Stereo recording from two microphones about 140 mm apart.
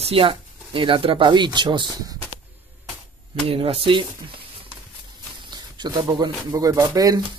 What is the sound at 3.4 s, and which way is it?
Speech, 40° right (ahead or behind).